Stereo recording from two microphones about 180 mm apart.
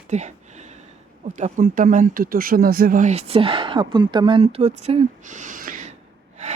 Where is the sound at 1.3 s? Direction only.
45° right (ahead or behind).